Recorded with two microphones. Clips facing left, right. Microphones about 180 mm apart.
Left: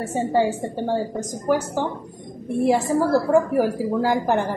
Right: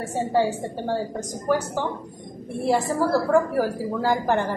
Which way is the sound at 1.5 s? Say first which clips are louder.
Left 2 dB; 15° left (ahead or behind).